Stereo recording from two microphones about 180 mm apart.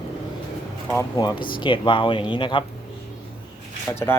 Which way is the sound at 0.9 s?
20° left (ahead or behind).